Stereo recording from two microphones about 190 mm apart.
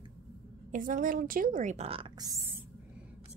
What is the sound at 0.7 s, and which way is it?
Speech, 45° right (ahead or behind).